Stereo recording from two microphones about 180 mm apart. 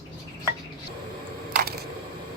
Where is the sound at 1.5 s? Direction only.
55° right (ahead or behind).